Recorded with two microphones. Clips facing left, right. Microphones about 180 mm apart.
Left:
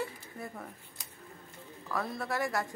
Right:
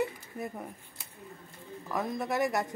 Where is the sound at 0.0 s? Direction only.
20° right (ahead or behind).